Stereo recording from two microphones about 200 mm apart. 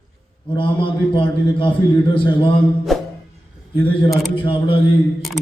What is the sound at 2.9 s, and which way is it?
Music, centre (ahead or behind).